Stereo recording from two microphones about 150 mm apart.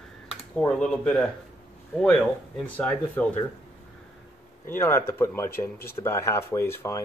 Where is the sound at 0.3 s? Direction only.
5° left (ahead or behind).